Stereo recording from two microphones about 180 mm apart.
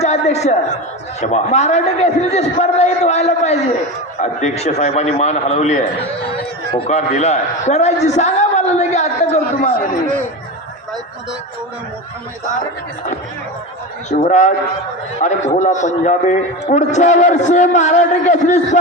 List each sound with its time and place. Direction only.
0.0 s a sound: 40° left (ahead or behind)
1.2 s a man's voice: 40° left (ahead or behind)
14.1 s a man's voice: 40° left (ahead or behind)